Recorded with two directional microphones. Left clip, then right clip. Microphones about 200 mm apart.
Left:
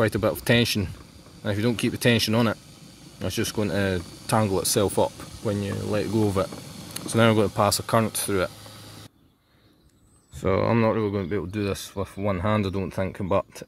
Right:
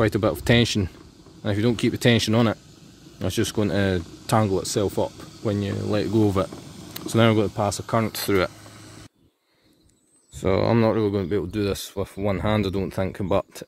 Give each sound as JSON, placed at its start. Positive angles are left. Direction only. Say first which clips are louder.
{"t": 0.0, "sound": "speech", "louder": "right 1 dB", "side_deg": -15}
{"t": 4.5, "sound": "speech", "louder": "even", "side_deg": 0}
{"t": 5.1, "sound": "speech", "louder": "right 2 dB", "side_deg": 60}
{"t": 6.1, "sound": "speech", "louder": "right 3 dB", "side_deg": -15}
{"t": 6.5, "sound": "a sound", "louder": "left 1 dB", "side_deg": 60}
{"t": 7.1, "sound": "speech", "louder": "right 1 dB", "side_deg": -15}
{"t": 7.3, "sound": "speech", "louder": "left 2 dB", "side_deg": 0}
{"t": 8.1, "sound": "speech", "louder": "right 3 dB", "side_deg": -10}
{"t": 10.4, "sound": "speech", "louder": "right 2 dB", "side_deg": -20}